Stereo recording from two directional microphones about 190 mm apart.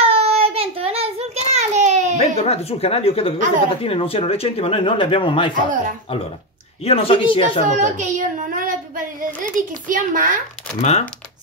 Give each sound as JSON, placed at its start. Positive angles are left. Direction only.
{"t": 0.0, "sound": "child singing", "side_deg": -30}
{"t": 2.1, "sound": "speech", "side_deg": 35}
{"t": 6.8, "sound": "speech", "side_deg": 30}
{"t": 7.6, "sound": "a child's voice", "side_deg": -40}
{"t": 10.8, "sound": "speech", "side_deg": 35}